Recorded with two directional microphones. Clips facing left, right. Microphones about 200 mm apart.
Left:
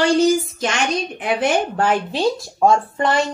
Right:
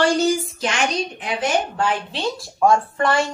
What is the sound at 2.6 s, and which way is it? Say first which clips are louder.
Speech: even; 20° left (ahead or behind).